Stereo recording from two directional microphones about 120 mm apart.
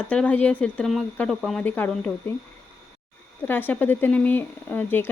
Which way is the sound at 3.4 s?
15° left (ahead or behind).